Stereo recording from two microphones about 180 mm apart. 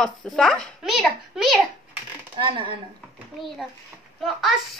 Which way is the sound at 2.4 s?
30° right (ahead or behind).